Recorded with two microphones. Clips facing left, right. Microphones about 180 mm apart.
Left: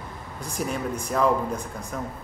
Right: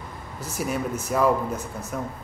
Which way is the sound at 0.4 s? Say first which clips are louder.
Right 1 dB; 5° right (ahead or behind).